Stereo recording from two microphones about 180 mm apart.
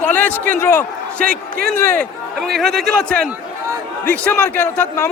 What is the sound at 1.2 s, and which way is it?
Speech, 55° right (ahead or behind).